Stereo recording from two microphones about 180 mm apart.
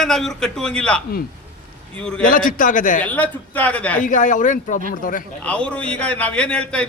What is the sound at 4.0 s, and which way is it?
Speech, 45° left (ahead or behind).